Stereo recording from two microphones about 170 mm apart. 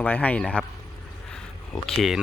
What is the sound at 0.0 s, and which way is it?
Speech, 10° left (ahead or behind).